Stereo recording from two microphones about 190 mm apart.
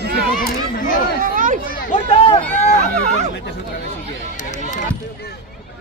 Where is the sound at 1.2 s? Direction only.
45° right (ahead or behind).